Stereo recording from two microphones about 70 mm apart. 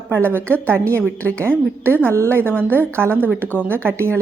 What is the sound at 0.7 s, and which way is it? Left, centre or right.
Speech, right.